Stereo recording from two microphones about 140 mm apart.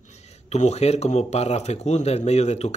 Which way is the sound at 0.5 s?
50° left (ahead or behind).